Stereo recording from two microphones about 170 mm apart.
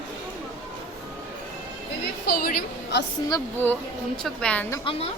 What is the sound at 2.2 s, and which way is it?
Speech, 65° left (ahead or behind).